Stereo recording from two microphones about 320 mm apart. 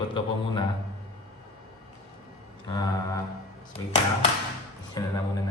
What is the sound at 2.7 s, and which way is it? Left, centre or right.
Speech, centre.